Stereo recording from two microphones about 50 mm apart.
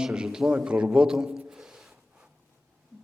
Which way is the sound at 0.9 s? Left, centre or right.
Centre.